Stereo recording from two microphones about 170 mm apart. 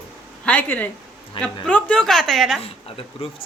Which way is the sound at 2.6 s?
35° left (ahead or behind).